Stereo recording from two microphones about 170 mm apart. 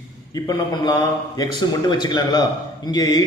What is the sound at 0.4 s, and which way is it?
A man's voice, 25° left (ahead or behind).